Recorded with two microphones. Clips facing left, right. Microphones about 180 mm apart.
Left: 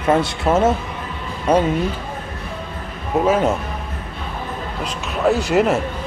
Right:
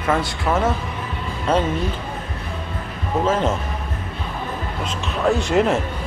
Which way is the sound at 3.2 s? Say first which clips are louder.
Left 3 dB; 10° left (ahead or behind).